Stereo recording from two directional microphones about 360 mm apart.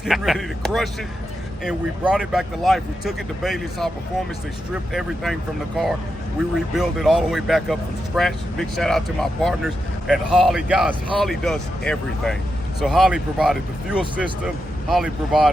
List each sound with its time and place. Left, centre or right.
0.0 s speech: centre
4.9 s speech: centre